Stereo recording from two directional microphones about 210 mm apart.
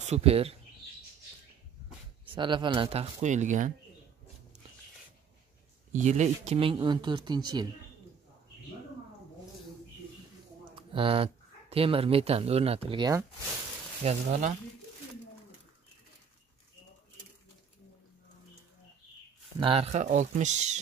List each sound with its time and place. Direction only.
0.0 s speech: 30° right (ahead or behind)
2.3 s speech: 20° right (ahead or behind)
5.9 s speech: 35° right (ahead or behind)
10.7 s a sound: 25° right (ahead or behind)
11.7 s speech: 25° right (ahead or behind)
14.0 s speech: 35° right (ahead or behind)
19.6 s speech: 30° right (ahead or behind)